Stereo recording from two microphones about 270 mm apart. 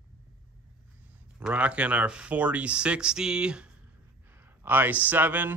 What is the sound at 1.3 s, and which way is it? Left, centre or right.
Speech, centre.